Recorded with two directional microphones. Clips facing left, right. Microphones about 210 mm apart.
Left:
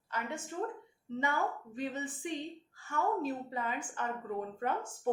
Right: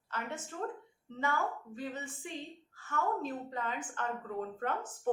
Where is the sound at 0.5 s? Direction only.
20° left (ahead or behind).